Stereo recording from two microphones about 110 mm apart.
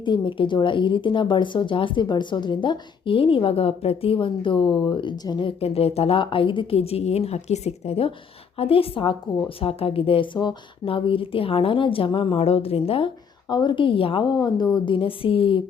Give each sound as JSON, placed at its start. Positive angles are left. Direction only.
{"t": 0.0, "sound": "speech", "side_deg": 45}
{"t": 5.5, "sound": "a woman's voice", "side_deg": 65}
{"t": 13.5, "sound": "speech", "side_deg": 45}
{"t": 14.3, "sound": "speech", "side_deg": 40}